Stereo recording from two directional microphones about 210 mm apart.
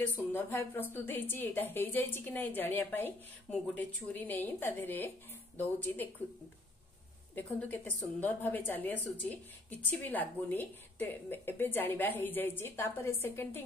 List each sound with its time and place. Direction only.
0.0 s a woman's voice: 10° left (ahead or behind)
7.3 s a woman's voice: 10° left (ahead or behind)